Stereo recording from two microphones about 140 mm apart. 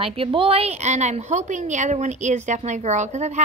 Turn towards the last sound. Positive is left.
turn(degrees=-55)  # may be behind; listen again after turning